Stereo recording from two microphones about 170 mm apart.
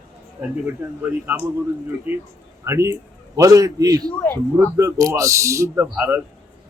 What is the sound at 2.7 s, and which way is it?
A man's voice, 15° right (ahead or behind).